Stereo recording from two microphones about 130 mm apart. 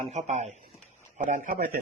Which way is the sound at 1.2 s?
75° right (ahead or behind).